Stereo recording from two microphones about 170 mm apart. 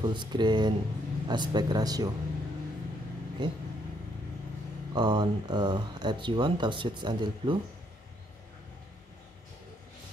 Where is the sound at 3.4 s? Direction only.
25° right (ahead or behind).